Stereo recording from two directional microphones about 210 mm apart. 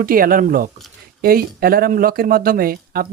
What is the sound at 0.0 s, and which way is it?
Speech, 45° right (ahead or behind).